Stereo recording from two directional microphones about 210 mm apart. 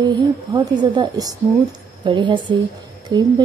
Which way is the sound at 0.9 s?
20° right (ahead or behind).